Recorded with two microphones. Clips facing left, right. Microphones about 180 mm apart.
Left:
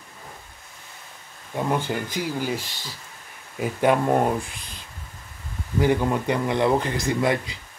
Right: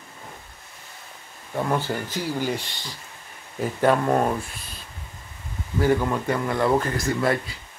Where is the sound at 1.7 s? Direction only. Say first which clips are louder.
Left 1 dB; 15° left (ahead or behind).